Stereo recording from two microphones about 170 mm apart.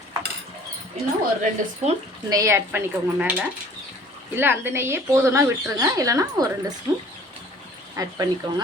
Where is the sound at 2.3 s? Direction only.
15° right (ahead or behind).